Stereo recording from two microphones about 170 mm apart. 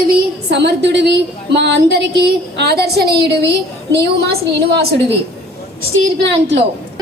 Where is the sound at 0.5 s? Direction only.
90° right; by 3.1 s 70° right (ahead or behind).